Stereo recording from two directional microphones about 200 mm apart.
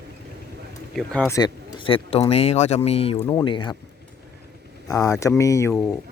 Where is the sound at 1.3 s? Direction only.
25° left (ahead or behind).